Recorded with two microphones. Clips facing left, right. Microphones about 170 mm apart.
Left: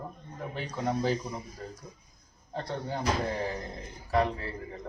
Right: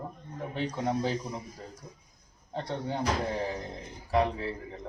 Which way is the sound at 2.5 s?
Centre (ahead or behind).